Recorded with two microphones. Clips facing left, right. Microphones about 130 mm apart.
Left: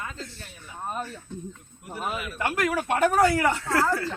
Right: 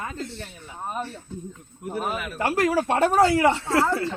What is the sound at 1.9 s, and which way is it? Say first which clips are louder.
Speech: right 3 dB; 45° right (ahead or behind).